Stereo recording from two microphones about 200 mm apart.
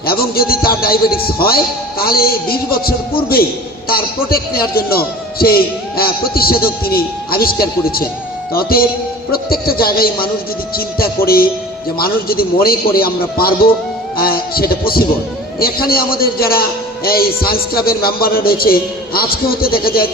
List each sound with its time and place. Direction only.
0.0 s a man's voice: 50° left (ahead or behind)